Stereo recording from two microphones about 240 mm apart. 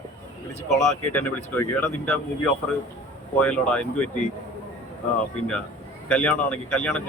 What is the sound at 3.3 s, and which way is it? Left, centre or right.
Speech, centre.